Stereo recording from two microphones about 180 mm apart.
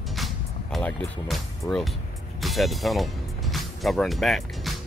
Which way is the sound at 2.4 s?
Centre (ahead or behind).